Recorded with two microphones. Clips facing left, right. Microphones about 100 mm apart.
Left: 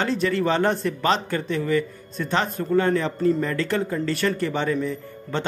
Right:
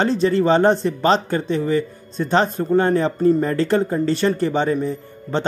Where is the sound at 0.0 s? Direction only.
30° right (ahead or behind).